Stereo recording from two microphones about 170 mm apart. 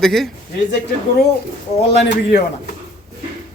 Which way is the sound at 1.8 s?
70° left (ahead or behind).